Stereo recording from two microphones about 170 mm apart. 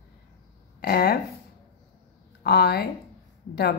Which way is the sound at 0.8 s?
65° left (ahead or behind).